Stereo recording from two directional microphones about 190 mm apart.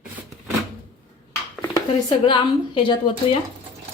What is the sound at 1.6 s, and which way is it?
A woman's voice, 20° left (ahead or behind).